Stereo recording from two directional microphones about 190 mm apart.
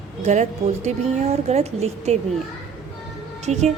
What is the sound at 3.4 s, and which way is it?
Speech, 35° right (ahead or behind).